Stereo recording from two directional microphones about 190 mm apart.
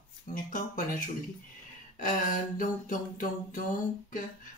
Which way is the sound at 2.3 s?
45° left (ahead or behind).